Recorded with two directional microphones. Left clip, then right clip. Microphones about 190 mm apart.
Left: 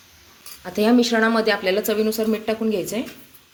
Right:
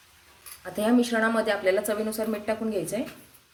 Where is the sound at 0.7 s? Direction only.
40° left (ahead or behind).